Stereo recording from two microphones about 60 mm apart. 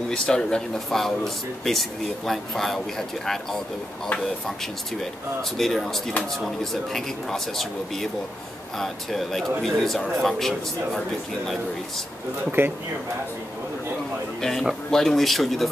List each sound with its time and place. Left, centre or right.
0.1 s speech: centre
5.6 s speech: centre
12.4 s speech: right
14.4 s speech: centre